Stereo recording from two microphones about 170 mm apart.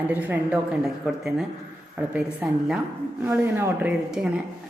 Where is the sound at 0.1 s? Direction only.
10° right (ahead or behind).